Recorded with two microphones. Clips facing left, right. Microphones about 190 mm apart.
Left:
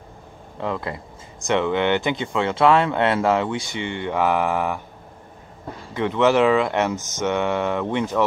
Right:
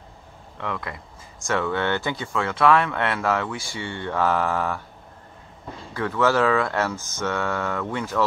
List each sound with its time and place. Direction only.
0.6 s speech: 30° left (ahead or behind)
5.9 s speech: 20° left (ahead or behind)